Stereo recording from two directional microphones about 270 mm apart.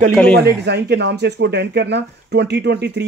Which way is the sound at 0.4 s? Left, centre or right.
Right.